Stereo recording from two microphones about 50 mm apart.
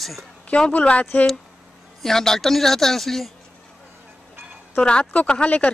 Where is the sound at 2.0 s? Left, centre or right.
Centre.